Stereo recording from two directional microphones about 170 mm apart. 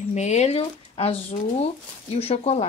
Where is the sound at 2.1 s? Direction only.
35° left (ahead or behind).